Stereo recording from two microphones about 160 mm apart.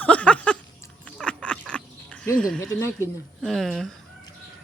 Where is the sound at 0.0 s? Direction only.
10° left (ahead or behind).